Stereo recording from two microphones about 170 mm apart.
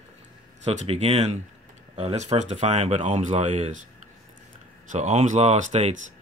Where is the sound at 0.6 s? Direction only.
40° right (ahead or behind).